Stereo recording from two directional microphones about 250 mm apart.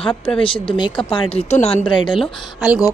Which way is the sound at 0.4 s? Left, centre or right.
Left.